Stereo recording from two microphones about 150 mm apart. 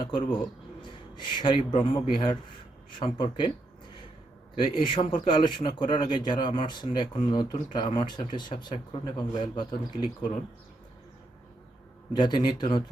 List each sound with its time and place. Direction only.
0.0 s speech: 35° left (ahead or behind)
4.5 s a man's voice: 35° left (ahead or behind)
12.1 s speech: 30° left (ahead or behind)